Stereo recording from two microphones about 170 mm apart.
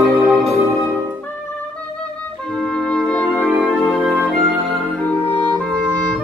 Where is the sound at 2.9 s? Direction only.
10° left (ahead or behind).